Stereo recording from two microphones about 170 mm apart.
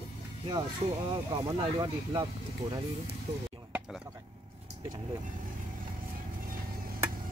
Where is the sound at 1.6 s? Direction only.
25° right (ahead or behind).